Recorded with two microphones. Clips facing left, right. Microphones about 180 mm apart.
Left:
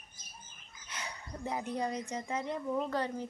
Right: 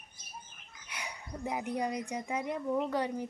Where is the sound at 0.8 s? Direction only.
10° right (ahead or behind).